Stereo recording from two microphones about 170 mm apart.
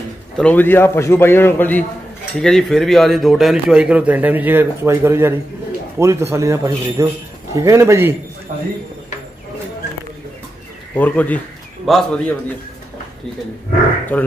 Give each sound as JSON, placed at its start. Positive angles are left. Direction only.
{"t": 0.4, "sound": "a man's voice", "side_deg": 10}
{"t": 11.0, "sound": "speech", "side_deg": 10}
{"t": 14.1, "sound": "a man's voice", "side_deg": 10}